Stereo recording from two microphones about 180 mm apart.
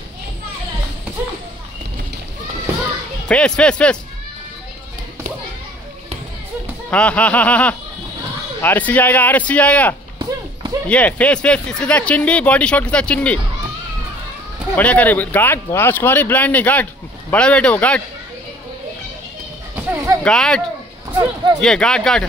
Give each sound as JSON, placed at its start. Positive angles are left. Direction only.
{"t": 3.3, "sound": "speech", "side_deg": 5}
{"t": 6.9, "sound": "speech", "side_deg": 5}
{"t": 10.1, "sound": "a sound", "side_deg": -30}
{"t": 10.9, "sound": "speech", "side_deg": 10}
{"t": 14.8, "sound": "speech", "side_deg": 10}
{"t": 19.7, "sound": "a sound", "side_deg": -15}
{"t": 20.2, "sound": "speech", "side_deg": 5}